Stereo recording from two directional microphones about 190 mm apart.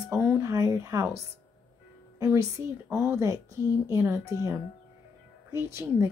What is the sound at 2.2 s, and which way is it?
Speech, 15° right (ahead or behind).